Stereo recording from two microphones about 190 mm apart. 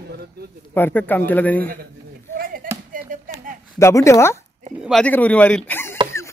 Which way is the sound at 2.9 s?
45° right (ahead or behind).